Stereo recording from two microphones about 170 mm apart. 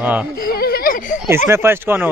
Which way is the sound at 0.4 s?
60° left (ahead or behind).